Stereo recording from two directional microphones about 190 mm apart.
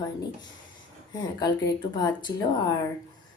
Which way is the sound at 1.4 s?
20° left (ahead or behind).